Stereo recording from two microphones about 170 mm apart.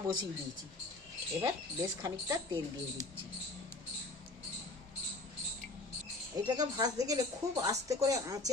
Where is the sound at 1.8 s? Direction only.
20° right (ahead or behind).